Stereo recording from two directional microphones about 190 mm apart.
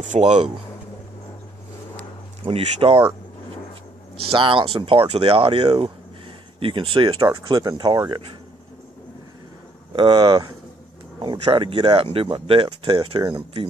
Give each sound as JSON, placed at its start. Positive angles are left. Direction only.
{"t": 0.0, "sound": "speech", "side_deg": -40}
{"t": 2.4, "sound": "speech", "side_deg": -30}
{"t": 4.3, "sound": "speech", "side_deg": -25}
{"t": 9.9, "sound": "speech", "side_deg": -25}